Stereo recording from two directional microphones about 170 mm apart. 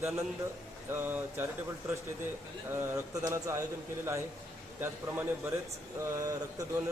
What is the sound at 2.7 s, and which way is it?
Speech, 15° right (ahead or behind).